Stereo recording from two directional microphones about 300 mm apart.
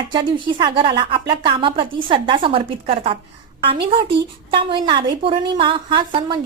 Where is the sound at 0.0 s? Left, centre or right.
Centre.